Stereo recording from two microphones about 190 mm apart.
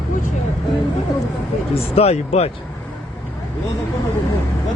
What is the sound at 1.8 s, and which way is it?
Speech, 30° left (ahead or behind).